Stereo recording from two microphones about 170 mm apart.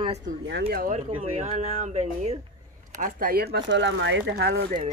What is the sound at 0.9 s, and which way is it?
Speech, 40° right (ahead or behind).